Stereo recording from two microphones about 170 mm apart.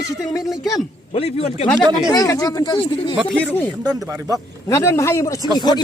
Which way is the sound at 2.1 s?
20° left (ahead or behind).